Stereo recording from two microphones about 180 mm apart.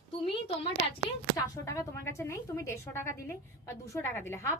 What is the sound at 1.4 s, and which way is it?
A woman's voice, 15° left (ahead or behind).